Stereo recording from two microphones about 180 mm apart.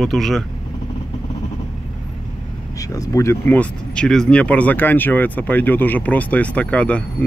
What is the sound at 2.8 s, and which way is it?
Speech, 20° left (ahead or behind).